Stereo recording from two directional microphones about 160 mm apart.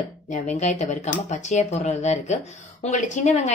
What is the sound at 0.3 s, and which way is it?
A woman's voice, 45° left (ahead or behind).